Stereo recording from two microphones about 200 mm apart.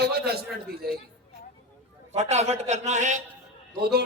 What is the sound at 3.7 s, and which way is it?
Speech, 50° right (ahead or behind).